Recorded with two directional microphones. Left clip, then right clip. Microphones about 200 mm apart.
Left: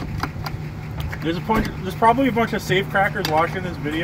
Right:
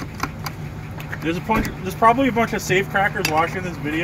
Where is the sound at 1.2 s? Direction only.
Centre (ahead or behind).